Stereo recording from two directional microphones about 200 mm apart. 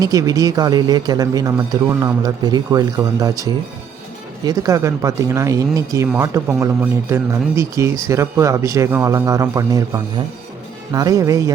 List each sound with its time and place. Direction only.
0.0 s a man's voice: 20° right (ahead or behind)